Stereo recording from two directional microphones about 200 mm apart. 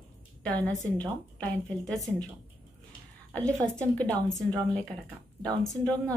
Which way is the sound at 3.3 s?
5° left (ahead or behind).